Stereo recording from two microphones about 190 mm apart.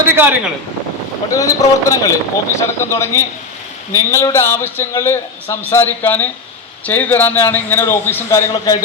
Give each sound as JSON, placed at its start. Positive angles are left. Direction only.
{"t": 0.1, "sound": "speech", "side_deg": -10}
{"t": 1.3, "sound": "a man's voice", "side_deg": 15}